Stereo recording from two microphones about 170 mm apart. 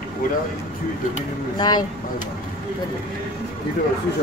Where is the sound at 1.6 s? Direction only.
25° left (ahead or behind).